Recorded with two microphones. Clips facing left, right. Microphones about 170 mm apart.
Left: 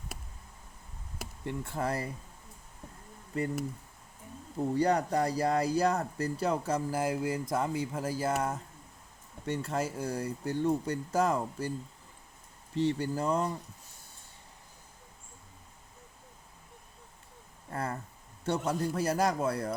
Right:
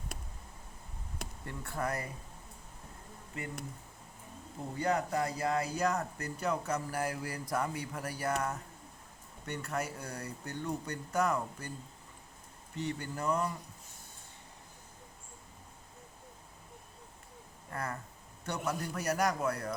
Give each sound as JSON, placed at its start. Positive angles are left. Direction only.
{"t": 1.5, "sound": "speech", "side_deg": 25}
{"t": 4.7, "sound": "speech", "side_deg": 35}
{"t": 12.7, "sound": "speech", "side_deg": 30}
{"t": 17.7, "sound": "speech", "side_deg": 30}